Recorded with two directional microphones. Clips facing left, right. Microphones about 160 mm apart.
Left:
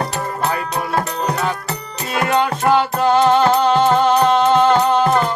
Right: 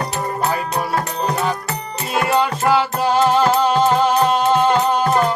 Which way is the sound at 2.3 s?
10° right (ahead or behind).